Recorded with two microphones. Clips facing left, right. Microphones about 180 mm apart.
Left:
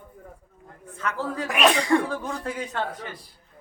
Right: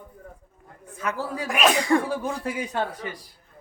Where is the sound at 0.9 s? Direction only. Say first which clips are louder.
Even; 10° right (ahead or behind).